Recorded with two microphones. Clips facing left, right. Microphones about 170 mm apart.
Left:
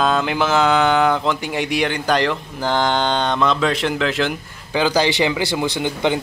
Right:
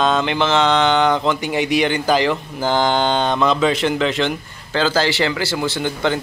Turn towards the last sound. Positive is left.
turn(degrees=15)  # may be behind; listen again after turning